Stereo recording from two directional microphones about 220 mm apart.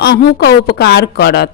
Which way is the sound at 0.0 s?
45° left (ahead or behind).